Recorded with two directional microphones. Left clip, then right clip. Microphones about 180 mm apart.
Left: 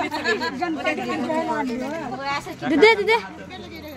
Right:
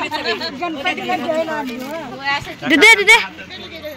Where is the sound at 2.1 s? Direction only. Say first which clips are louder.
Right 8 dB; 90° left.